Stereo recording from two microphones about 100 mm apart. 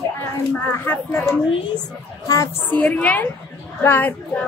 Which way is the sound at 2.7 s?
15° left (ahead or behind).